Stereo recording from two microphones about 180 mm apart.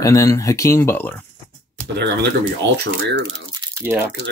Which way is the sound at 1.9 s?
65° right (ahead or behind).